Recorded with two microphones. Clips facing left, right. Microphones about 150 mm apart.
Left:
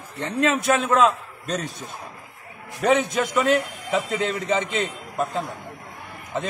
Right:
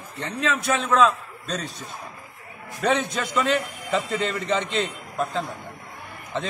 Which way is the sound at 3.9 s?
10° left (ahead or behind).